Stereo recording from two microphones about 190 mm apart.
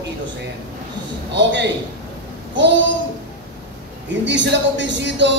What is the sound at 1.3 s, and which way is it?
Speech, 70° right (ahead or behind).